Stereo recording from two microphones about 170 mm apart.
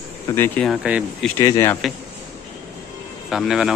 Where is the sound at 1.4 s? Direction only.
20° left (ahead or behind).